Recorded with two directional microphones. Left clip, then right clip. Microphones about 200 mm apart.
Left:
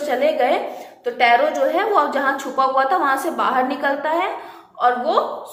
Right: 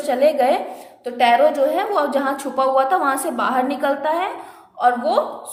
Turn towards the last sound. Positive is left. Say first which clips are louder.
# even
turn(degrees=-35)  # may be behind; listen again after turning